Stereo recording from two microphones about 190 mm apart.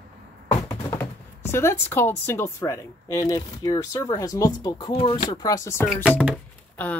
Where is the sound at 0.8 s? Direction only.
15° left (ahead or behind).